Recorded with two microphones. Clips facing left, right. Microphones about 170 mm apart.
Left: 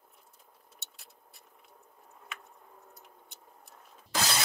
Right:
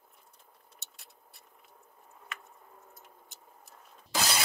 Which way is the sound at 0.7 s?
Centre (ahead or behind).